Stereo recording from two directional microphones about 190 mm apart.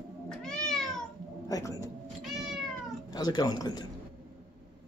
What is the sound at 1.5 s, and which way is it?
Speech, 15° left (ahead or behind).